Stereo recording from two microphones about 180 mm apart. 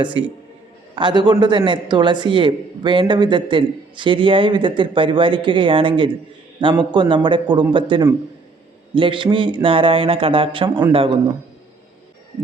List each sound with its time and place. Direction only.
0.9 s a man's voice: 25° right (ahead or behind)